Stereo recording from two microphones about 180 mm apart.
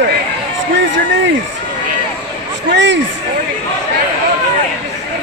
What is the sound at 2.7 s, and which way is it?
Speech, 85° right.